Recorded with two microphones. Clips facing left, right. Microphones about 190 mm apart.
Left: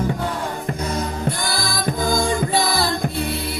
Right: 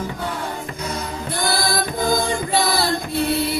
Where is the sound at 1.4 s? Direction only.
50° right (ahead or behind).